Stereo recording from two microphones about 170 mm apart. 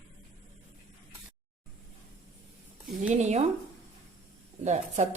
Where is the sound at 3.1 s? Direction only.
40° right (ahead or behind).